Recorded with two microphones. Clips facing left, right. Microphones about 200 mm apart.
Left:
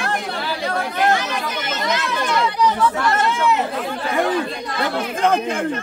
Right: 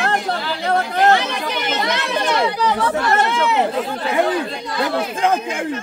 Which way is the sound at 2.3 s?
65° right (ahead or behind).